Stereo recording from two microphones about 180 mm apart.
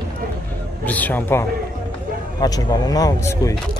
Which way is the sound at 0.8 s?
10° left (ahead or behind).